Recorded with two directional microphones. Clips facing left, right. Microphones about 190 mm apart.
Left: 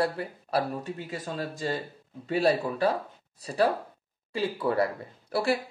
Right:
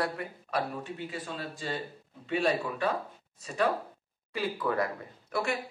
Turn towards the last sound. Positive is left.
turn(degrees=35)  # may be behind; listen again after turning